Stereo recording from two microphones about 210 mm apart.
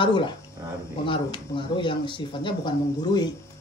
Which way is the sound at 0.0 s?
20° left (ahead or behind).